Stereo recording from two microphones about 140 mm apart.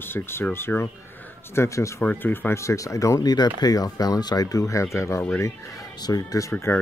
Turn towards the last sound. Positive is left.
turn(degrees=20)  # may be behind; listen again after turning